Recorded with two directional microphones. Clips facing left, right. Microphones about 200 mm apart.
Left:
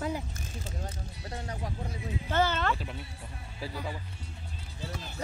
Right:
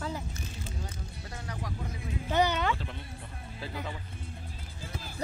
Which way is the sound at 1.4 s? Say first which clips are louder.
Left 1 dB; 30° left (ahead or behind).